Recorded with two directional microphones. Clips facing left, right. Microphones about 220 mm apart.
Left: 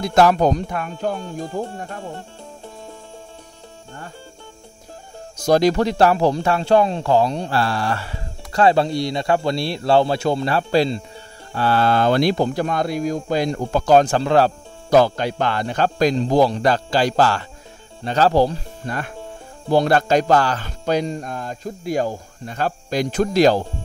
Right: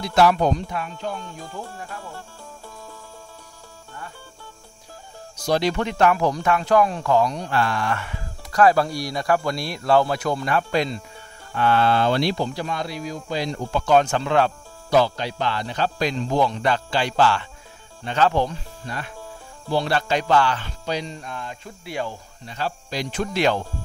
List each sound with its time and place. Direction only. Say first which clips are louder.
0.0 s speech: left 3 dB; 45° left (ahead or behind)
1.4 s speech: left 9 dB; 25° left (ahead or behind)
2.0 s music: left 5 dB; 25° left (ahead or behind)
5.4 s speech: left 6 dB; 45° left (ahead or behind)
18.9 s speech: left 5 dB; 50° left (ahead or behind)